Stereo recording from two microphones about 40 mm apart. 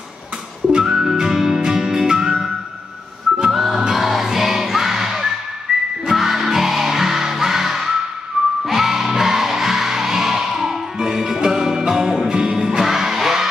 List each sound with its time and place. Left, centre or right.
0.7 s music: centre
3.5 s music: centre
5.7 s whistling: right
6.0 s music: centre